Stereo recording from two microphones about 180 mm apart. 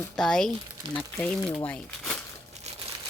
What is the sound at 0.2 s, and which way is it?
Speech, centre (ahead or behind).